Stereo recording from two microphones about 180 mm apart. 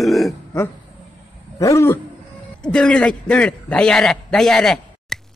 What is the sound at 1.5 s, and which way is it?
Roaring cats, 15° left (ahead or behind).